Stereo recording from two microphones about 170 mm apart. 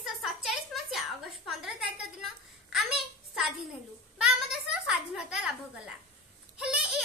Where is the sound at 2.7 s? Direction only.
Centre (ahead or behind).